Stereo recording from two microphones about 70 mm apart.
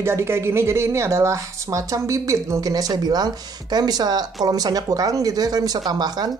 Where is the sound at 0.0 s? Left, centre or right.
Right.